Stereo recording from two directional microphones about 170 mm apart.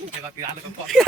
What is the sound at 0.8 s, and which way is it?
Speech, centre (ahead or behind).